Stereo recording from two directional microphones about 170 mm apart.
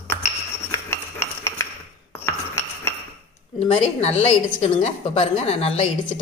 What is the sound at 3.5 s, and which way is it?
A woman's voice, 40° left (ahead or behind).